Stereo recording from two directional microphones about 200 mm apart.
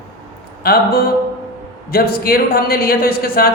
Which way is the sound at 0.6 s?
50° left (ahead or behind).